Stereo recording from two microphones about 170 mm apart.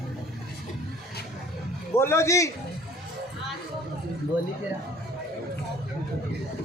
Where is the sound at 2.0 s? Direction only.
15° left (ahead or behind).